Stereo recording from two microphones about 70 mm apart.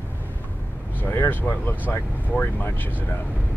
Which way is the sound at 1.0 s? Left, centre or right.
Left.